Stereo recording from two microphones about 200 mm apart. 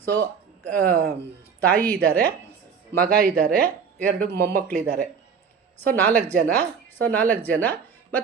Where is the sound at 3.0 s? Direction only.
50° right (ahead or behind).